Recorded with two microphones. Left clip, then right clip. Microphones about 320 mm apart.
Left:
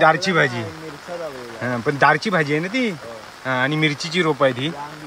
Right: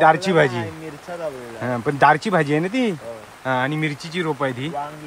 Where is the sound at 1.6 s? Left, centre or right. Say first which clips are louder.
Even; centre.